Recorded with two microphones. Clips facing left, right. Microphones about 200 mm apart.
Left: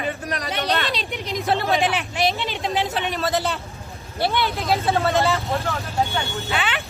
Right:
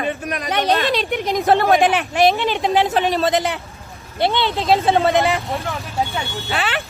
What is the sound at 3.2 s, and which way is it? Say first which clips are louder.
Speech: right 4 dB; 15° right (ahead or behind).